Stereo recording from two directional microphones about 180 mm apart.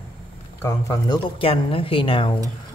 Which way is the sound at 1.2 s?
30° left (ahead or behind).